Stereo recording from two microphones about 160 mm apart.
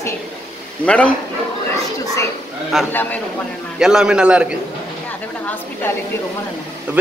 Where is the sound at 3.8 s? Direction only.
5° right (ahead or behind).